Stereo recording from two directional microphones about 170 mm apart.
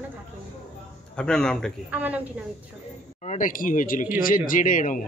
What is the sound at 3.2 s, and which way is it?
Speech, 50° left (ahead or behind).